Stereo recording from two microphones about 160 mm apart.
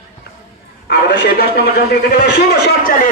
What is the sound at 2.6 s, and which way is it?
Speech, 85° left.